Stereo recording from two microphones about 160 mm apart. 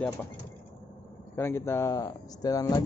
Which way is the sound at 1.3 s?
15° left (ahead or behind).